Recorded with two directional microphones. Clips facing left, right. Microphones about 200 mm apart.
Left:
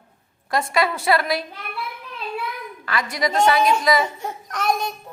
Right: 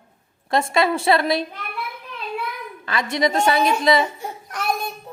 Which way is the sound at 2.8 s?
25° right (ahead or behind).